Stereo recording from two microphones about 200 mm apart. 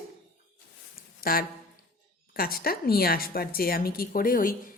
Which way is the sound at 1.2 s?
50° left (ahead or behind).